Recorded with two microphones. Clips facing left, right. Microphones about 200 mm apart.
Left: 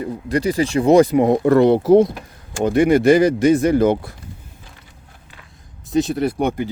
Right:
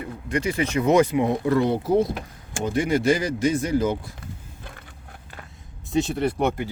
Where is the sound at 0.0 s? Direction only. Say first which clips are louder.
Left 6 dB; 35° left (ahead or behind); by 2.0 s 75° left (ahead or behind).